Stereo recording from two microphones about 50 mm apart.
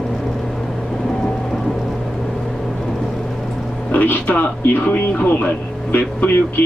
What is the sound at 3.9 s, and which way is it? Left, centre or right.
Speech, left.